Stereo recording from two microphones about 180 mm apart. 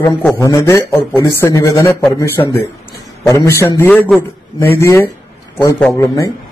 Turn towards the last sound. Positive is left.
turn(degrees=15)  # may be behind; listen again after turning